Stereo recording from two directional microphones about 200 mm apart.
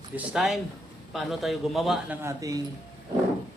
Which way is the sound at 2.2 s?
15° right (ahead or behind).